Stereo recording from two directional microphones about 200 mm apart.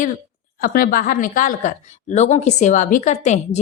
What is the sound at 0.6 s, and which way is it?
Speech, 45° left (ahead or behind).